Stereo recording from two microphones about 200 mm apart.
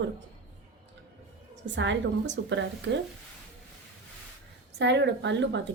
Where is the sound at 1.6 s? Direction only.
65° right (ahead or behind).